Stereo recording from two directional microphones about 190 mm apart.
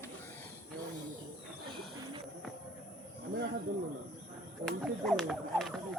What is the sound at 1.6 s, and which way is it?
Bird, 25° right (ahead or behind).